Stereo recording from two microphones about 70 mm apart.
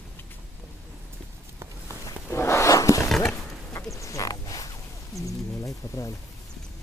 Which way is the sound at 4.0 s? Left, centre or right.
Left.